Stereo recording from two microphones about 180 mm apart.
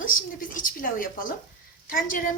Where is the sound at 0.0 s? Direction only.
50° left (ahead or behind).